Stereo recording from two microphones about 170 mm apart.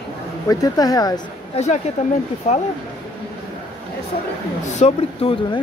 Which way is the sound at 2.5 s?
35° left (ahead or behind).